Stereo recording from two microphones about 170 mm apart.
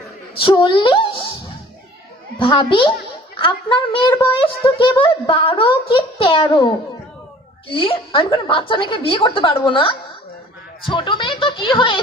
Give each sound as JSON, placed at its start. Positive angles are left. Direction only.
{"t": 0.5, "sound": "speech", "side_deg": 30}
{"t": 2.4, "sound": "a woman's voice", "side_deg": 30}
{"t": 10.9, "sound": "speech", "side_deg": 30}